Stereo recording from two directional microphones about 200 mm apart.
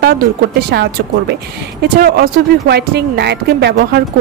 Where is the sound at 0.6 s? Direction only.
55° right (ahead or behind).